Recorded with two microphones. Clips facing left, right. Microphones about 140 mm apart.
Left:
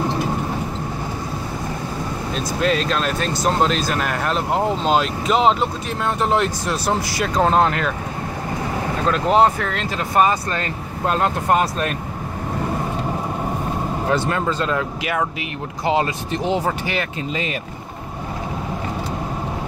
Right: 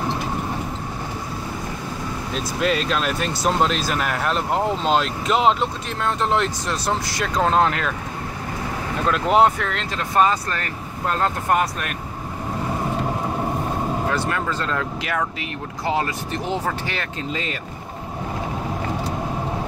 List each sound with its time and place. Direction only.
2.3 s speech: centre (ahead or behind)
9.0 s speech: centre (ahead or behind)
10.5 s speech: 20° left (ahead or behind)
14.1 s speech: 20° left (ahead or behind)